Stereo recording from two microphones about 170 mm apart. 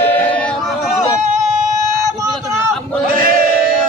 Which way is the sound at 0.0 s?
10° left (ahead or behind).